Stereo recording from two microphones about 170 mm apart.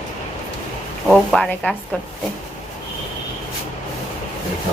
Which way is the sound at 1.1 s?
5° left (ahead or behind).